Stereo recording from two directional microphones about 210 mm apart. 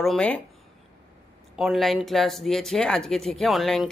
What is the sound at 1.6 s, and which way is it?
Speech, centre (ahead or behind).